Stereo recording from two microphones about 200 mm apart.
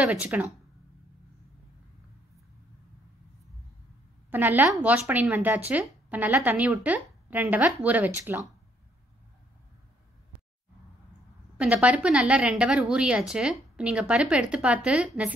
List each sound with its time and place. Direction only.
0.0 s a woman's voice: 5° right (ahead or behind)
4.3 s a woman's voice: 10° right (ahead or behind)
11.5 s speech: 5° right (ahead or behind)